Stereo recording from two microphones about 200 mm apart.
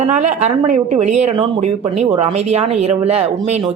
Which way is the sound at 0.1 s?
35° right (ahead or behind).